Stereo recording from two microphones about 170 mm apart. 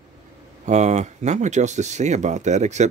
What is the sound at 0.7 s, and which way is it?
Speech, 45° right (ahead or behind).